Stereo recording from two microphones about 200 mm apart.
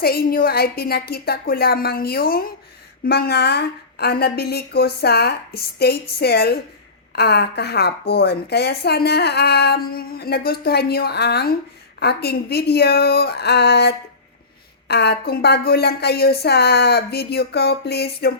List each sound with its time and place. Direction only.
0.0 s speech: 50° left (ahead or behind)